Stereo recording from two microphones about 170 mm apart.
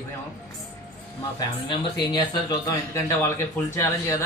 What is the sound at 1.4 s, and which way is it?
A man's voice, 30° left (ahead or behind).